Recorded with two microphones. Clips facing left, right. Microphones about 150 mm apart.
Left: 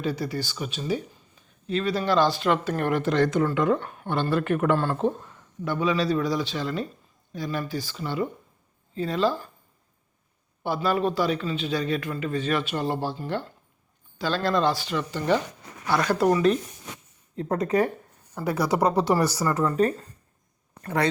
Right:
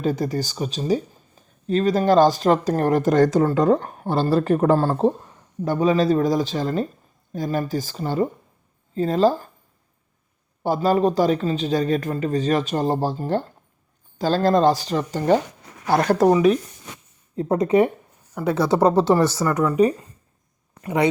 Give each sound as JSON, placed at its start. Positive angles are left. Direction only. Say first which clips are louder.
{"t": 0.0, "sound": "speech", "louder": "right 5 dB", "side_deg": -45}
{"t": 10.6, "sound": "speech", "louder": "right 6 dB", "side_deg": -40}
{"t": 17.3, "sound": "speech", "louder": "right 6 dB", "side_deg": -30}
{"t": 19.6, "sound": "speech", "louder": "right 6 dB", "side_deg": -10}